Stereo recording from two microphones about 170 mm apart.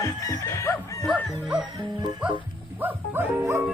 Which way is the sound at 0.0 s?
20° left (ahead or behind).